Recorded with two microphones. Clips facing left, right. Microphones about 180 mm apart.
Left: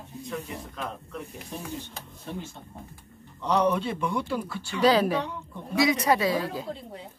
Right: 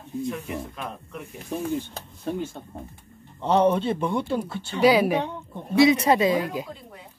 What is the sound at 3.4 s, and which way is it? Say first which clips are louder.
Speech: right 4 dB; 30° right (ahead or behind).